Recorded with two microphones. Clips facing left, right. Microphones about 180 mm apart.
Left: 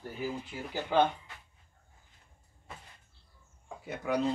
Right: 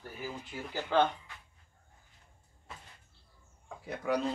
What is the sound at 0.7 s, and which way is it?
Speech, 15° left (ahead or behind).